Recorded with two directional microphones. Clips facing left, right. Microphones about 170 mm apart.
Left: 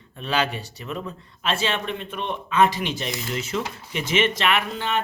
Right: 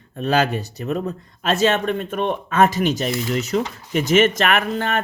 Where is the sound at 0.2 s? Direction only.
45° right (ahead or behind).